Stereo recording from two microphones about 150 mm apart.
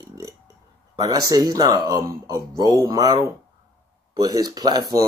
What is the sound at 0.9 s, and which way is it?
Speech, 25° right (ahead or behind).